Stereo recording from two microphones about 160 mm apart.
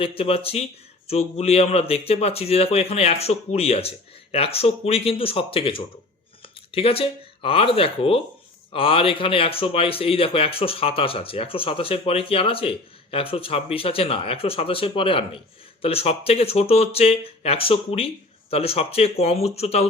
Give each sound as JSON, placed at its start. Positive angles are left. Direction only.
{"t": 0.0, "sound": "speech", "side_deg": 35}